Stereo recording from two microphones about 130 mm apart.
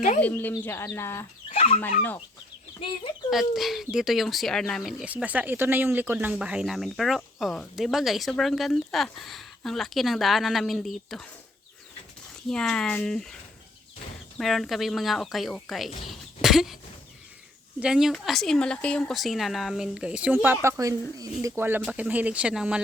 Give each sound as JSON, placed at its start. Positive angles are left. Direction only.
{"t": 0.2, "sound": "speech", "side_deg": 15}
{"t": 1.5, "sound": "speech", "side_deg": 50}
{"t": 3.2, "sound": "speech", "side_deg": 0}
{"t": 12.5, "sound": "speech", "side_deg": 5}
{"t": 14.3, "sound": "speech", "side_deg": 0}
{"t": 16.0, "sound": "a sound", "side_deg": 0}
{"t": 17.7, "sound": "speech", "side_deg": -5}